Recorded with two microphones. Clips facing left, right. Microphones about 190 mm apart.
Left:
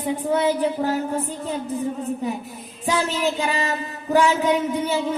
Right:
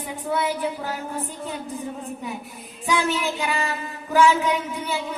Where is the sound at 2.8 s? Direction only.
40° left (ahead or behind).